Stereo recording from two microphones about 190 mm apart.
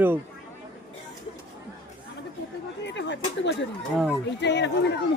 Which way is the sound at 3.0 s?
70° left (ahead or behind).